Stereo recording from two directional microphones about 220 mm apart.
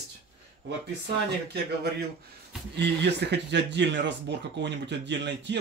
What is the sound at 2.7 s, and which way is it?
A man's voice, 50° right (ahead or behind).